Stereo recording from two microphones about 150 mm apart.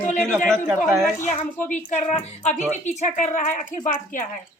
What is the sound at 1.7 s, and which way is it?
A woman's voice, 50° left (ahead or behind).